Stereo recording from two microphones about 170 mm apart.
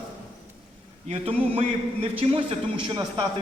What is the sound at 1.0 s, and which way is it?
A man's voice, 35° right (ahead or behind).